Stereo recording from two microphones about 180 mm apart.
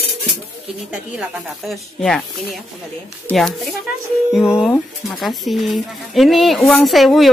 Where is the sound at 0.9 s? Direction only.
5° right (ahead or behind).